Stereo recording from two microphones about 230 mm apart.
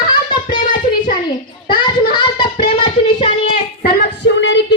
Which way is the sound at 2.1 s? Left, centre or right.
Left.